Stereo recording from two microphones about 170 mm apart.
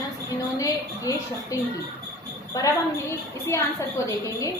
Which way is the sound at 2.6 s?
20° left (ahead or behind).